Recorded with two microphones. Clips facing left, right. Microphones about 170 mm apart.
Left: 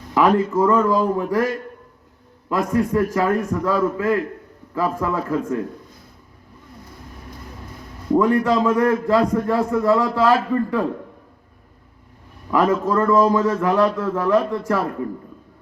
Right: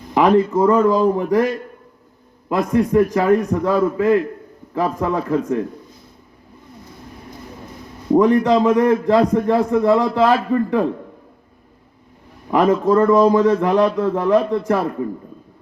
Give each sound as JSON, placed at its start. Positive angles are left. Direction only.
{"t": 0.1, "sound": "a sound", "side_deg": -20}
{"t": 0.5, "sound": "a man's voice", "side_deg": -20}
{"t": 8.1, "sound": "a man's voice", "side_deg": -20}
{"t": 12.5, "sound": "a man's voice", "side_deg": -20}